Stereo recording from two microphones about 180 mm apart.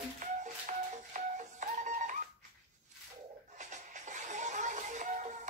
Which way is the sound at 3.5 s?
45° right (ahead or behind).